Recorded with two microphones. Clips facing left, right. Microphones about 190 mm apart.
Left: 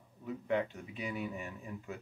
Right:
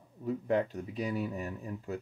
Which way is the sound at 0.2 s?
40° right (ahead or behind).